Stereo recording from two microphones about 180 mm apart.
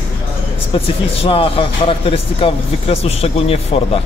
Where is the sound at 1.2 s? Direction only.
30° left (ahead or behind).